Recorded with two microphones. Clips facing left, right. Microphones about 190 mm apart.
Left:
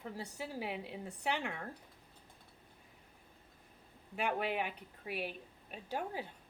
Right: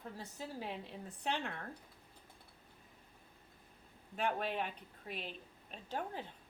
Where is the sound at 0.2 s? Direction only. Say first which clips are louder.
Left 3 dB; 10° left (ahead or behind).